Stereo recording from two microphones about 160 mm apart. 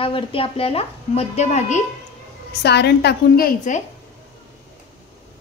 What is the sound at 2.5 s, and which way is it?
A woman's voice, 90° left.